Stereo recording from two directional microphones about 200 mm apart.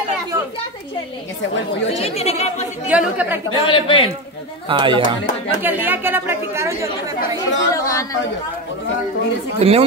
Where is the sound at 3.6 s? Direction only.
25° left (ahead or behind).